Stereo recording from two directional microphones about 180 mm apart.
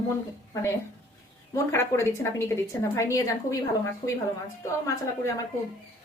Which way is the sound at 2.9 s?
15° left (ahead or behind).